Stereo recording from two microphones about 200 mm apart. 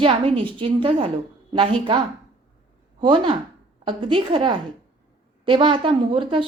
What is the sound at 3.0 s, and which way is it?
A woman's voice, 25° right (ahead or behind).